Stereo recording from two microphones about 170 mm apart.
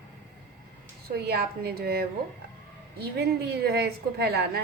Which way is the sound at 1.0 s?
70° right (ahead or behind).